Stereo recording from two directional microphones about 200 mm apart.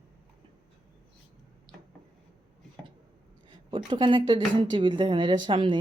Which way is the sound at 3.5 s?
25° right (ahead or behind).